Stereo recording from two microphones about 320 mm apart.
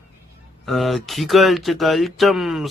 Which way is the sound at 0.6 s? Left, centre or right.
Centre.